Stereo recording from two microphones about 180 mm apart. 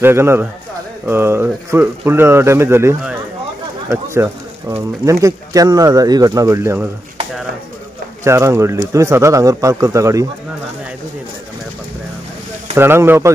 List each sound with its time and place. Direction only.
0.0 s speech: 15° right (ahead or behind)
8.2 s speech: 15° right (ahead or behind)
12.7 s speech: 10° right (ahead or behind)